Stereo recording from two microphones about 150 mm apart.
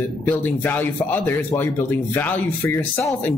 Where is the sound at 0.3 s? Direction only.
10° left (ahead or behind).